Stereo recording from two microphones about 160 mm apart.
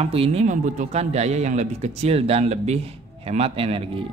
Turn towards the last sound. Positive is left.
turn(degrees=-35)  # may be behind; listen again after turning